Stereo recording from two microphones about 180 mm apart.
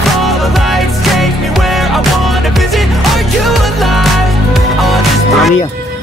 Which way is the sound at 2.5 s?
Centre (ahead or behind).